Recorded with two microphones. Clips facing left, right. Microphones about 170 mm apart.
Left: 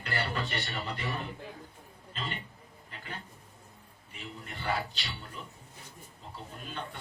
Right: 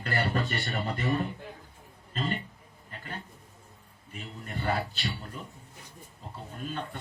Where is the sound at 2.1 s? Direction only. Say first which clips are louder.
Right 7 dB; 45° right (ahead or behind).